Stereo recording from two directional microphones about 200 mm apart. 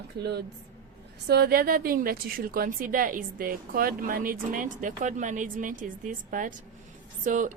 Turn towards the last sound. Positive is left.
turn(degrees=-40)  # may be behind; listen again after turning